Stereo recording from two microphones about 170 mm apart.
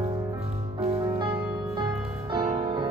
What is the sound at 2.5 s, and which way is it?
Music, 25° right (ahead or behind).